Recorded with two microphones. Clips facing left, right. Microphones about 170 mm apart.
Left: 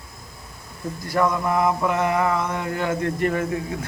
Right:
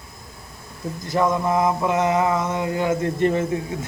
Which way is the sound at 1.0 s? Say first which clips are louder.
Right 1 dB; 20° right (ahead or behind).